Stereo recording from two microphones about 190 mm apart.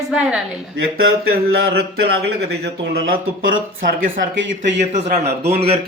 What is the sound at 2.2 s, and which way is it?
Speech, 60° right (ahead or behind).